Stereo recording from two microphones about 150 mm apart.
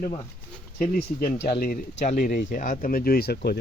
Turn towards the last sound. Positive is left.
turn(degrees=90)